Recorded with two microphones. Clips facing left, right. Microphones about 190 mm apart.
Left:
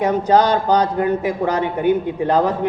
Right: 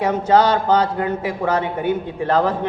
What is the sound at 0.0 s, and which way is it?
A man's voice, 15° left (ahead or behind).